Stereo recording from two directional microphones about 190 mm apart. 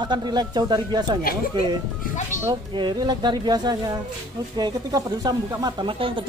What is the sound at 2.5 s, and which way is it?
Speech, 20° right (ahead or behind).